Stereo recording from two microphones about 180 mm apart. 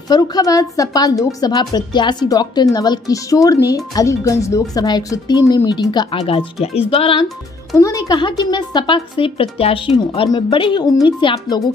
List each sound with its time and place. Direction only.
0.1 s a woman's voice: 20° left (ahead or behind)
7.7 s a woman's voice: 20° left (ahead or behind)